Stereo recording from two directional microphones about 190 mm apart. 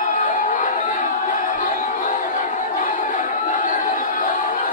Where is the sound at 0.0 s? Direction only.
45° left (ahead or behind).